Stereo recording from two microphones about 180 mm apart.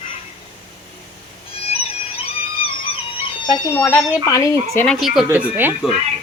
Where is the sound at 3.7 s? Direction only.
10° left (ahead or behind).